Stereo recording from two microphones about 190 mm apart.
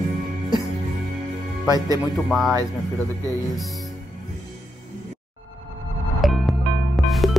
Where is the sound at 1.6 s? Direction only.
20° right (ahead or behind).